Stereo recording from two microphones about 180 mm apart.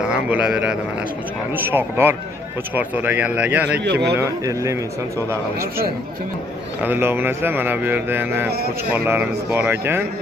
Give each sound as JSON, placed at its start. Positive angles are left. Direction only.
{"t": 0.0, "sound": "a man's voice", "side_deg": -5}
{"t": 3.8, "sound": "speech", "side_deg": -70}
{"t": 4.2, "sound": "speech", "side_deg": -15}
{"t": 6.8, "sound": "speech", "side_deg": -10}